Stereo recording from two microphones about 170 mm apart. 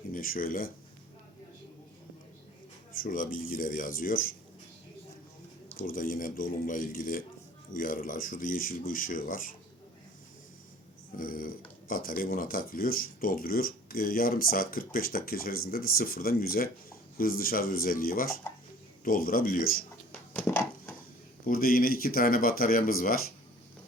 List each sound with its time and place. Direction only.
0.1 s speech: 55° left (ahead or behind)
2.9 s speech: 55° left (ahead or behind)
5.8 s speech: 55° left (ahead or behind)
11.2 s speech: 55° left (ahead or behind)
21.4 s speech: 60° left (ahead or behind)